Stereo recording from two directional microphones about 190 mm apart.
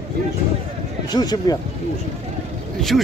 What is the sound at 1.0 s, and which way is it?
Speech, 20° left (ahead or behind).